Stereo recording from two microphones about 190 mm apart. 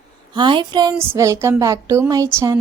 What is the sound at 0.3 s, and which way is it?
Speech, 25° right (ahead or behind).